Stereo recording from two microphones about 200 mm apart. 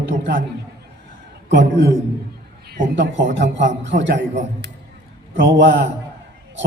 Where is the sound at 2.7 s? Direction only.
60° right (ahead or behind).